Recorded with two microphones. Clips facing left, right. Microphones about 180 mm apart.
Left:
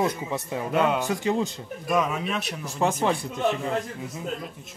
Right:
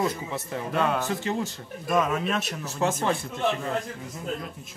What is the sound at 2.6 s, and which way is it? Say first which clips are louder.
Speech: left 3 dB; 15° left (ahead or behind).